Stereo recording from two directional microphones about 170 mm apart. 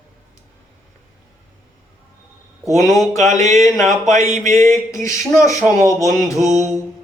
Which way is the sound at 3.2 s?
45° right (ahead or behind).